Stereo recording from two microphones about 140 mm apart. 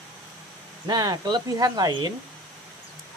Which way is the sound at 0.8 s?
30° right (ahead or behind).